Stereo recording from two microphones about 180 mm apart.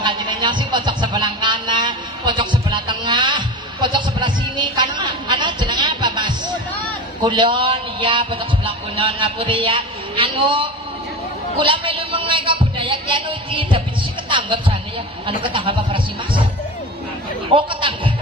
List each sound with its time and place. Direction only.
0.0 s a sound: 25° right (ahead or behind)
7.2 s a man's voice: 30° right (ahead or behind)
14.3 s music: 30° right (ahead or behind)
15.4 s speech: 30° right (ahead or behind)
17.5 s speech: 30° right (ahead or behind)